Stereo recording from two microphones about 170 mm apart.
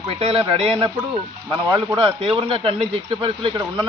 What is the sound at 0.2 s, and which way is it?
Speech, 35° right (ahead or behind).